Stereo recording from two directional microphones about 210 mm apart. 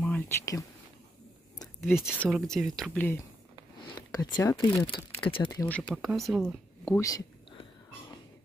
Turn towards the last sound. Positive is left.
turn(degrees=15)  # may be behind; listen again after turning